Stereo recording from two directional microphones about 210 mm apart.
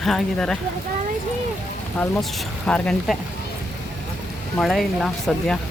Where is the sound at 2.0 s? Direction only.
10° left (ahead or behind).